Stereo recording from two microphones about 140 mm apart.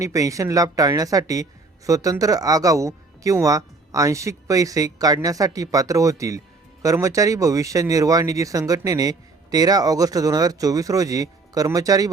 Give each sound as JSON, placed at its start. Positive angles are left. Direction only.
{"t": 0.0, "sound": "speech", "side_deg": -25}